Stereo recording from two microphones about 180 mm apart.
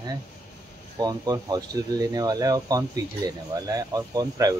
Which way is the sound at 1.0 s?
20° right (ahead or behind).